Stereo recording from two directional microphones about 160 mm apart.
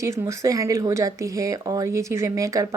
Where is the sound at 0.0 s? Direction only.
20° right (ahead or behind).